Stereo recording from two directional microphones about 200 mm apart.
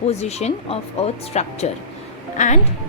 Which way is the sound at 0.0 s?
30° left (ahead or behind).